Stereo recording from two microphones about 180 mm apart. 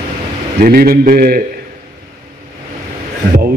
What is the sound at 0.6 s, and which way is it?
Speech, 55° right (ahead or behind).